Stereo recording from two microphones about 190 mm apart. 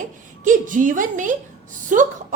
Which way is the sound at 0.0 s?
40° right (ahead or behind).